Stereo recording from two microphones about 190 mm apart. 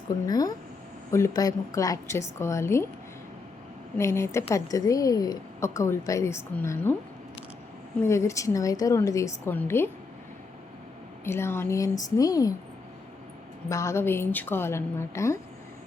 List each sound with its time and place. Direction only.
0.3 s a woman's voice: 20° left (ahead or behind)
3.9 s a woman's voice: 15° left (ahead or behind)
8.0 s a woman's voice: 15° left (ahead or behind)
11.3 s a woman's voice: 15° left (ahead or behind)
13.7 s a woman's voice: 15° left (ahead or behind)